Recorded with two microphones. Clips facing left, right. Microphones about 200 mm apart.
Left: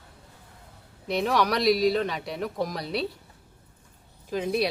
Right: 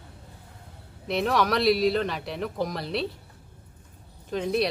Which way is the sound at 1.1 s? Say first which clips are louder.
Even; centre (ahead or behind).